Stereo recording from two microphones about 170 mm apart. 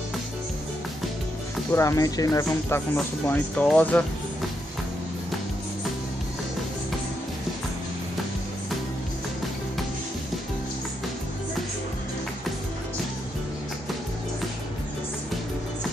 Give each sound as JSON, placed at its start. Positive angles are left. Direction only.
{"t": 1.7, "sound": "speech", "side_deg": 15}
{"t": 3.3, "sound": "speech", "side_deg": 10}